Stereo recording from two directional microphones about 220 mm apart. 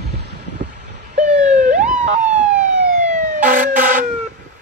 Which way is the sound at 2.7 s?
35° right (ahead or behind).